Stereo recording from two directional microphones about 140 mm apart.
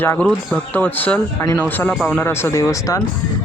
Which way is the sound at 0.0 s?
15° left (ahead or behind).